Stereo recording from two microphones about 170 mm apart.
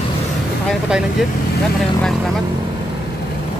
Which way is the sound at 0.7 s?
5° right (ahead or behind).